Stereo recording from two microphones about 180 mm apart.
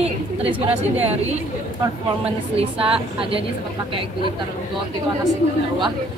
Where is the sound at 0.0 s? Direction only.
30° right (ahead or behind).